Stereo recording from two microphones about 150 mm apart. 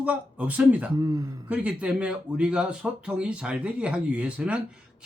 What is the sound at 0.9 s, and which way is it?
Speech, 25° right (ahead or behind).